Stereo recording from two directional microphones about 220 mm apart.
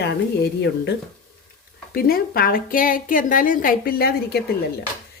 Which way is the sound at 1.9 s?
45° left (ahead or behind).